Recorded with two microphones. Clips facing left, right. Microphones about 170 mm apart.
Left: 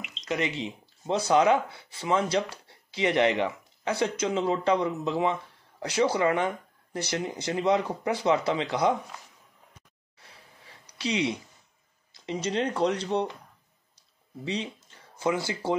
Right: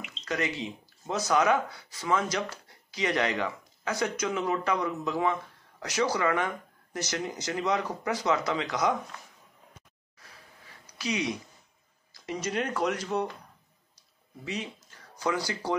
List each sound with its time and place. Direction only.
0.2 s speech: 20° left (ahead or behind)
10.1 s a sound: 30° left (ahead or behind)
12.1 s speech: 25° left (ahead or behind)
14.4 s speech: 25° left (ahead or behind)